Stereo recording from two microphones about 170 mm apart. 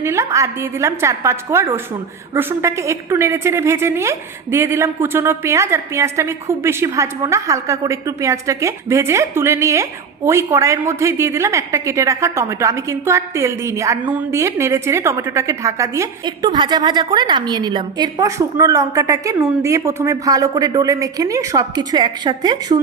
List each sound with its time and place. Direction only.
0.0 s a woman's voice: 15° right (ahead or behind)